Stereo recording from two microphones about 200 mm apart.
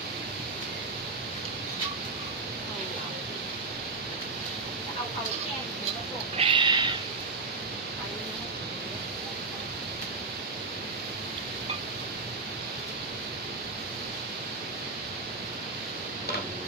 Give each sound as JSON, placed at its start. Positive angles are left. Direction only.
{"t": 6.3, "sound": "owl", "side_deg": -25}